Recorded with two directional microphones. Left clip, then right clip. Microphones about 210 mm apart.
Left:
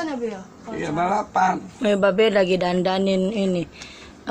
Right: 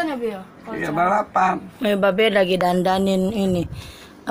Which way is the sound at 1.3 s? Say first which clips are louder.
Right 1 dB; 5° left (ahead or behind).